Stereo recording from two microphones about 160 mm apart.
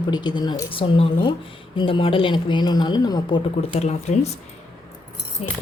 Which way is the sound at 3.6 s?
45° left (ahead or behind).